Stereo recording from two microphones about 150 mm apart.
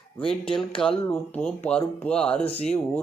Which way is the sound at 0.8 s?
10° left (ahead or behind).